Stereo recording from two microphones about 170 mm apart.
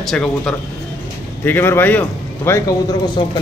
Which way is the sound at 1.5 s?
15° left (ahead or behind).